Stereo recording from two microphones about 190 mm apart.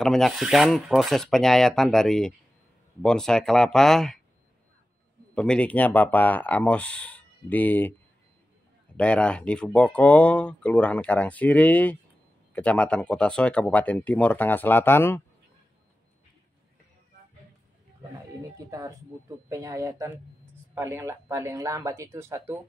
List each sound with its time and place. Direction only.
0.0 s rub: centre (ahead or behind)
5.3 s speech: 5° left (ahead or behind)
8.9 s speech: 5° left (ahead or behind)
18.7 s speech: 15° right (ahead or behind)